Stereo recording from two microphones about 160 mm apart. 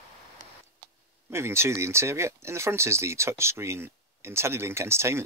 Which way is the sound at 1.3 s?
15° right (ahead or behind).